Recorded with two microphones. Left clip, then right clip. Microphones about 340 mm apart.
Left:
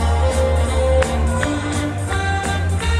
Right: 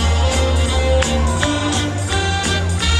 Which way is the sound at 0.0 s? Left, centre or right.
Centre.